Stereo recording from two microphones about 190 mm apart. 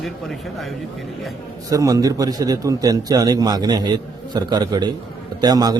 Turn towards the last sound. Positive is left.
turn(degrees=-20)  # may be behind; listen again after turning